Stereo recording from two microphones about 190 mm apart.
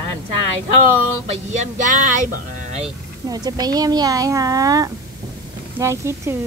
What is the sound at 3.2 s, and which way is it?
A woman's voice, 20° right (ahead or behind).